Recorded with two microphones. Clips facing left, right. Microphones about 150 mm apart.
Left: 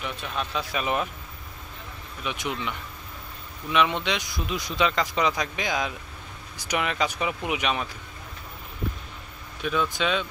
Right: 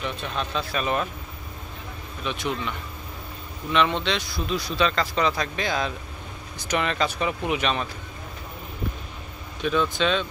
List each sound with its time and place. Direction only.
0.0 s speech: 10° left (ahead or behind)
2.2 s speech: 15° left (ahead or behind)
3.7 s speech: 10° left (ahead or behind)
9.6 s speech: 5° left (ahead or behind)